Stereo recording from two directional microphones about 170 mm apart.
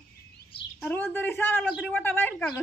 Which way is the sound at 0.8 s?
10° left (ahead or behind).